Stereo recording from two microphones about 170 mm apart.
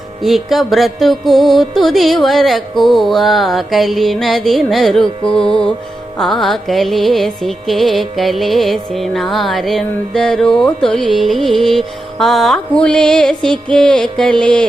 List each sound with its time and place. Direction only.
0.2 s music: centre (ahead or behind)
5.2 s music: 30° left (ahead or behind)
6.1 s music: centre (ahead or behind)